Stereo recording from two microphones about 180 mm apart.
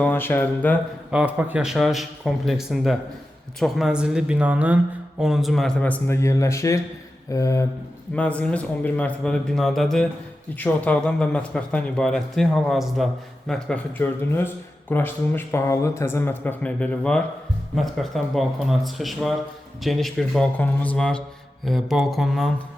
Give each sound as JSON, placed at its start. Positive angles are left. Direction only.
{"t": 0.0, "sound": "speech", "side_deg": 10}
{"t": 1.1, "sound": "a man's voice", "side_deg": -10}
{"t": 8.1, "sound": "a man's voice", "side_deg": 5}